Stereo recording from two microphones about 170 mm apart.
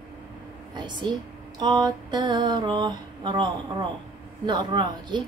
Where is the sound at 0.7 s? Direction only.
25° right (ahead or behind).